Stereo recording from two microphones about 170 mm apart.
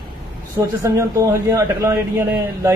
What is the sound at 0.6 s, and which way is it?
A man's voice, 20° right (ahead or behind).